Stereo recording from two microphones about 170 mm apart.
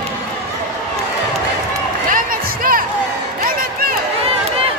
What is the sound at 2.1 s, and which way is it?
Music, 55° right (ahead or behind).